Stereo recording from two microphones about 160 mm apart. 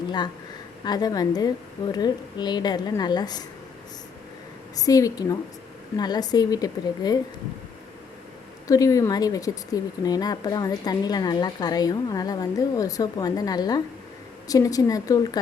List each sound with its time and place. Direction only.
0.9 s a woman's voice: 25° left (ahead or behind)
4.8 s a woman's voice: 20° left (ahead or behind)
8.6 s a woman's voice: 20° left (ahead or behind)